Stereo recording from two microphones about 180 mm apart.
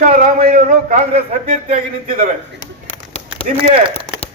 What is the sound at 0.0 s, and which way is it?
Speech, 40° right (ahead or behind).